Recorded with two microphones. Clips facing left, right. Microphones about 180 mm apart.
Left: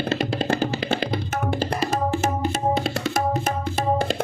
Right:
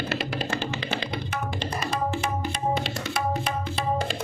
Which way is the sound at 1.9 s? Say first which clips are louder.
Left 2 dB; 45° left (ahead or behind).